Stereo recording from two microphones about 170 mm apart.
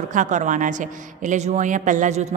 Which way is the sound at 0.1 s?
45° right (ahead or behind).